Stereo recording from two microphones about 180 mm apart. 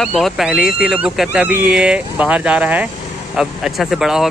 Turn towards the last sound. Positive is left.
turn(degrees=0)  # may be behind; listen again after turning